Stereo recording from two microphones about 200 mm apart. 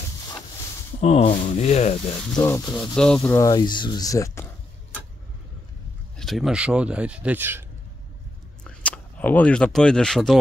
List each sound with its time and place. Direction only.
1.0 s rub: 35° left (ahead or behind)
2.3 s speech: 15° left (ahead or behind)
3.0 s speech: 5° left (ahead or behind)
3.3 s speech: 15° left (ahead or behind)
6.1 s speech: centre (ahead or behind)
8.6 s speech: 5° left (ahead or behind)